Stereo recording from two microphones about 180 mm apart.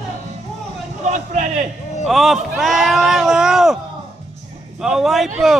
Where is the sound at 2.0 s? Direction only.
Centre (ahead or behind).